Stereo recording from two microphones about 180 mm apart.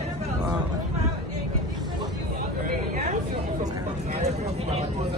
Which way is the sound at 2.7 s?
40° right (ahead or behind).